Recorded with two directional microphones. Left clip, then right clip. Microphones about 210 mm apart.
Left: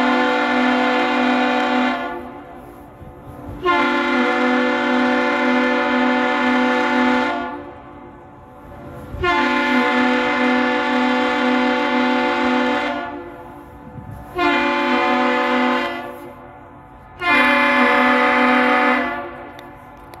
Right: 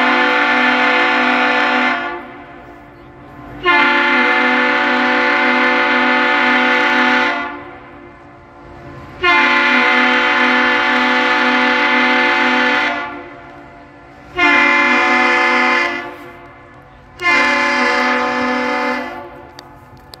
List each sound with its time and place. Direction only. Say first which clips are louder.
0.0 s a sound: right 4 dB; 5° left (ahead or behind)
3.6 s train: right 6 dB; 5° left (ahead or behind)
9.2 s train: right 6 dB; 5° left (ahead or behind)
14.3 s train: right 6 dB; centre (ahead or behind)
17.2 s train: right 2 dB; 15° right (ahead or behind)